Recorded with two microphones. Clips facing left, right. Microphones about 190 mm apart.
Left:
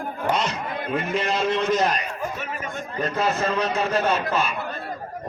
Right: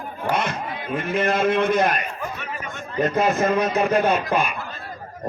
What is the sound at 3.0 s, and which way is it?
Speech, 15° right (ahead or behind).